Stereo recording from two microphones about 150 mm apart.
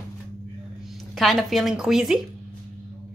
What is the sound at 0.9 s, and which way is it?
Speech, centre (ahead or behind).